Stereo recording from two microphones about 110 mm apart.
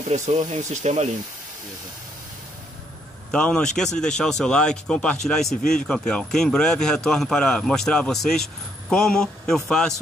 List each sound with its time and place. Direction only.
0.1 s speech: 90° right
3.3 s speech: 5° left (ahead or behind)